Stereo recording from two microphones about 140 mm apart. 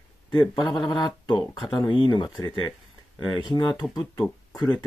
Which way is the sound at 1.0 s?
35° left (ahead or behind).